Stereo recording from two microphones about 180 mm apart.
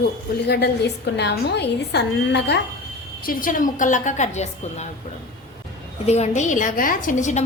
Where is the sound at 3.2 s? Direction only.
50° left (ahead or behind).